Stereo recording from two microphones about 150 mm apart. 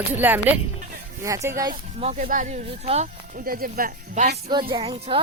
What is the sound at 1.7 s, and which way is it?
Speech, 45° right (ahead or behind).